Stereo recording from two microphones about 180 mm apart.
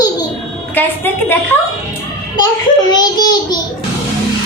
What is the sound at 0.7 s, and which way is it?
Speech, 10° left (ahead or behind).